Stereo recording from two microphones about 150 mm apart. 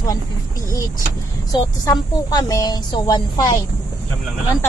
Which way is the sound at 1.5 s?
25° left (ahead or behind).